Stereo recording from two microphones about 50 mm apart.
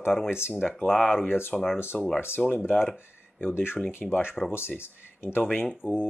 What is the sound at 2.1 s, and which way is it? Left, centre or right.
Speech, left.